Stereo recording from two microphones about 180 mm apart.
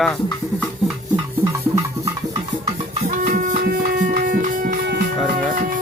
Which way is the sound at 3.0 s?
45° right (ahead or behind).